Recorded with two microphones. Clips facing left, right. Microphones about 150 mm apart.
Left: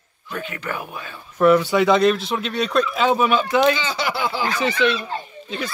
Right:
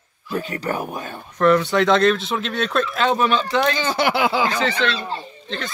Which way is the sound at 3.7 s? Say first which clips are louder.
Right 3 dB; 50° right (ahead or behind).